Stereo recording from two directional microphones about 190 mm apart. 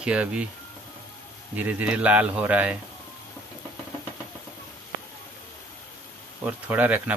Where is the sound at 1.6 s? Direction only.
10° right (ahead or behind).